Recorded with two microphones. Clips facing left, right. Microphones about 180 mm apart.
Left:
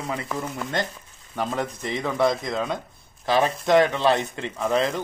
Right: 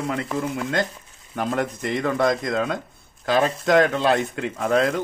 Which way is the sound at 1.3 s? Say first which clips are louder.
Right 3 dB; 55° right (ahead or behind).